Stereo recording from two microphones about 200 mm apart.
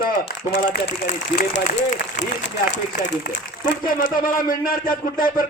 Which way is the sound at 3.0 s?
65° left (ahead or behind).